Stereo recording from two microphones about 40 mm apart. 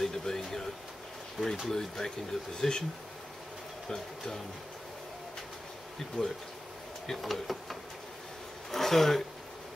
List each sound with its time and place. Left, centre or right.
0.0 s a sound: centre
1.7 s speech: centre
3.9 s speech: centre
6.2 s speech: left
7.1 s speech: centre
8.7 s speech: centre